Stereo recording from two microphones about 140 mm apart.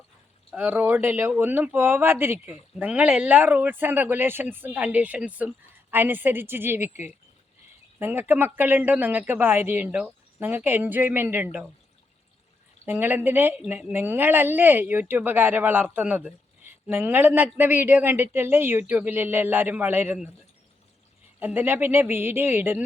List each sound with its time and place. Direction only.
0.5 s speech: 10° right (ahead or behind)
12.8 s speech: 15° right (ahead or behind)
21.3 s speech: 10° right (ahead or behind)